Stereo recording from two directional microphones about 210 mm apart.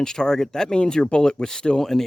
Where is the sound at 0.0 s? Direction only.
5° left (ahead or behind).